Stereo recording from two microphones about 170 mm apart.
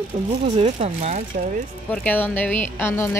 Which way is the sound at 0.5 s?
40° right (ahead or behind).